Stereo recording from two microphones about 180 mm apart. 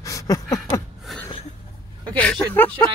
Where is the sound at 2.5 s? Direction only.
10° left (ahead or behind).